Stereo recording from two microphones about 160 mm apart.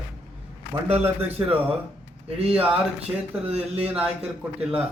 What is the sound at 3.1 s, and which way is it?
Speech, 15° right (ahead or behind).